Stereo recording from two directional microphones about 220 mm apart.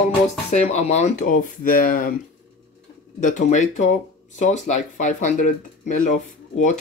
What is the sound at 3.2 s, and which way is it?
Speech, 35° left (ahead or behind).